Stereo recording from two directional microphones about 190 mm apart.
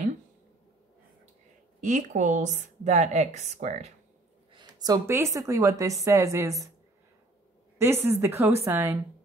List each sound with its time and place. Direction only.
1.8 s a woman's voice: 40° right (ahead or behind)
4.6 s a woman's voice: 20° right (ahead or behind)
7.8 s a woman's voice: 15° right (ahead or behind)